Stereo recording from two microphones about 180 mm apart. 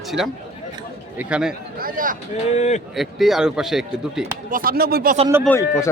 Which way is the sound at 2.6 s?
40° left (ahead or behind).